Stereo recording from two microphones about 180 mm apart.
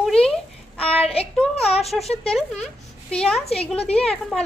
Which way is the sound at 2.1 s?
5° left (ahead or behind).